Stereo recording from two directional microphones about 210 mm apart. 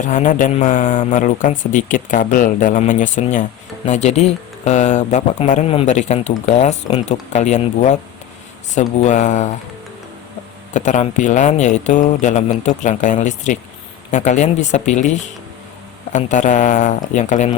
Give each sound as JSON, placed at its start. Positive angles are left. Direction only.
{"t": 0.1, "sound": "speech", "side_deg": 35}
{"t": 10.8, "sound": "speech", "side_deg": 35}
{"t": 16.1, "sound": "speech", "side_deg": 35}